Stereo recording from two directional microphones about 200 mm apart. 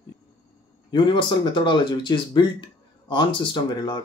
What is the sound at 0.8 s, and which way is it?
Speech, 25° left (ahead or behind).